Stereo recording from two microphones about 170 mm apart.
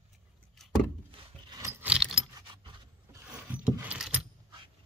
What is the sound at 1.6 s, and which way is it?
Keys jangling, 15° right (ahead or behind).